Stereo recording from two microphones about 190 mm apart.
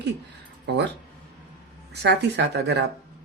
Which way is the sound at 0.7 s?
60° right (ahead or behind).